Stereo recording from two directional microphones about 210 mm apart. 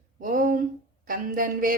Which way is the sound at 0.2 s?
40° right (ahead or behind).